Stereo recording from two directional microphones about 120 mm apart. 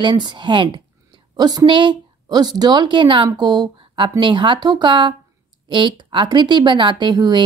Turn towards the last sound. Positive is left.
turn(degrees=-35)  # may be behind; listen again after turning